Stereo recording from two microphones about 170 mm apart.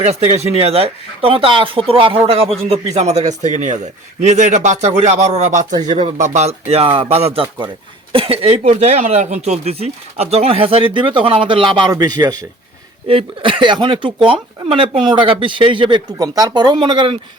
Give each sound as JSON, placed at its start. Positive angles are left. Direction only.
{"t": 0.0, "sound": "speech", "side_deg": -40}
{"t": 13.1, "sound": "speech", "side_deg": -30}